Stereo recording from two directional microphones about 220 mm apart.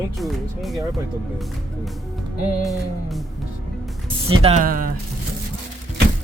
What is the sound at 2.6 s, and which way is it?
Music, centre (ahead or behind).